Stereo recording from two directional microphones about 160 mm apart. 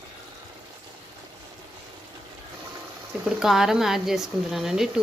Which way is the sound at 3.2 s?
5° right (ahead or behind).